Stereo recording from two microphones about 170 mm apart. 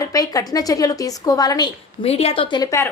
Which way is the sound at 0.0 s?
20° left (ahead or behind).